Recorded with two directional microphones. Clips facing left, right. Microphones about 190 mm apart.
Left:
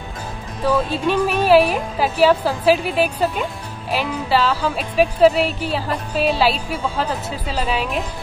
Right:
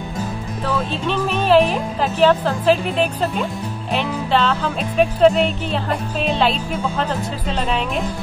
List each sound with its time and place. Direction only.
0.7 s speech: 10° left (ahead or behind)
3.9 s music: 5° left (ahead or behind)